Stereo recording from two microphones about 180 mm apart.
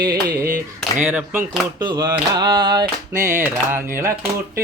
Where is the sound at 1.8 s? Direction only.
25° right (ahead or behind).